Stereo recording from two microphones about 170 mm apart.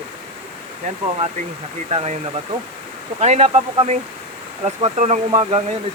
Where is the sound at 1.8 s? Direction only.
40° right (ahead or behind).